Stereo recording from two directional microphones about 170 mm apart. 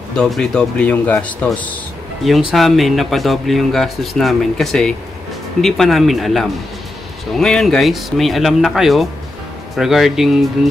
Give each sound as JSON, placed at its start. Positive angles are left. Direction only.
{"t": 0.1, "sound": "speech", "side_deg": 5}